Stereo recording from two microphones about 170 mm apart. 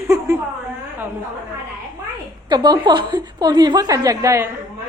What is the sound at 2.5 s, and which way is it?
A woman's voice, 25° right (ahead or behind).